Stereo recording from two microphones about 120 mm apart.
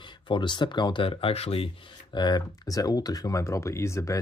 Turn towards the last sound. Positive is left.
turn(degrees=25)  # may be behind; listen again after turning